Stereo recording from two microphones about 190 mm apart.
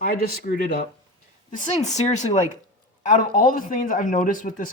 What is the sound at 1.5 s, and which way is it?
Speech, 40° left (ahead or behind).